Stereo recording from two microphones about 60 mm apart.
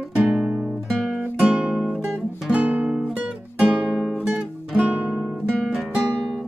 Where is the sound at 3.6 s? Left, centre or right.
Centre.